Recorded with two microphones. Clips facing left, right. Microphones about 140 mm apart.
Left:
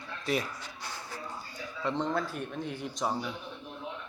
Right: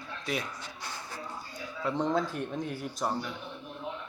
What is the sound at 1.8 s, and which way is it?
Speech, 10° right (ahead or behind).